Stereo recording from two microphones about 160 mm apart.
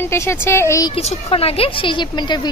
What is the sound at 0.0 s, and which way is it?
Speech, 15° left (ahead or behind).